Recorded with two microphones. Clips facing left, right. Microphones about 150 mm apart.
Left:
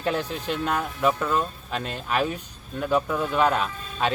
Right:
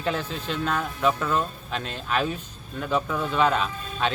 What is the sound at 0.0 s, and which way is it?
Speech, 10° left (ahead or behind).